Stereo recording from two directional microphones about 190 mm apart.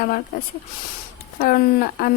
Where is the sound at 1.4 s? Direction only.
50° left (ahead or behind).